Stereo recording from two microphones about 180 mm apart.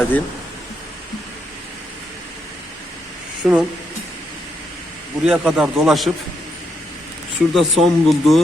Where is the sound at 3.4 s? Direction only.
5° right (ahead or behind).